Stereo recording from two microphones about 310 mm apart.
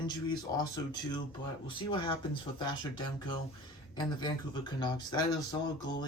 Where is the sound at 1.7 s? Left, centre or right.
Centre.